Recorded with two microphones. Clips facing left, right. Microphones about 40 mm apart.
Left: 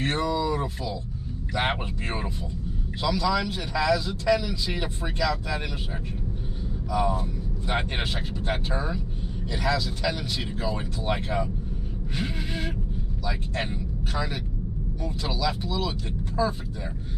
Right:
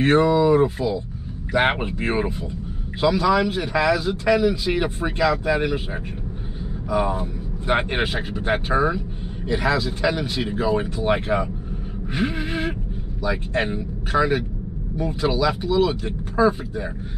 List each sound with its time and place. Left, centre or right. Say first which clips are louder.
0.0 s speech: right 9 dB; right
6.9 s speech: right 4 dB; right
12.1 s a sound: right 8 dB; right
13.2 s speech: right 8 dB; right